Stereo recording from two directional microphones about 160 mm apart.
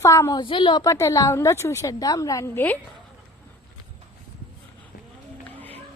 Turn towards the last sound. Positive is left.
turn(degrees=10)  # may be behind; listen again after turning